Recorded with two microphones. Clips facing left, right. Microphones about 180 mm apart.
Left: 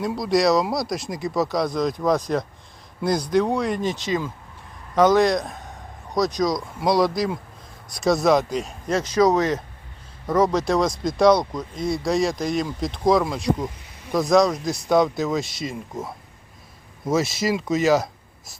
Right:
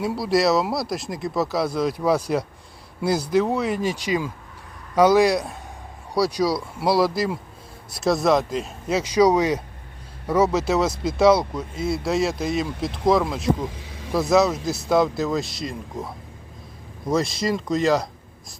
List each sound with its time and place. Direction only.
0.0 s speech: 5° right (ahead or behind)
13.7 s snake: 90° right
14.1 s speech: 5° right (ahead or behind)